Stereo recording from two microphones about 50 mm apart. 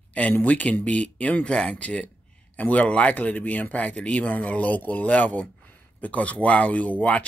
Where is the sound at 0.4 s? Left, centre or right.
Left.